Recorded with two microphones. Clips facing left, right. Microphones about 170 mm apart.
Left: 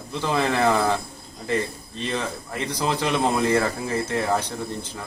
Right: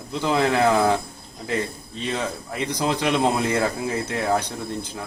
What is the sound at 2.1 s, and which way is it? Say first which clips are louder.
Speech: right 1 dB; 15° right (ahead or behind).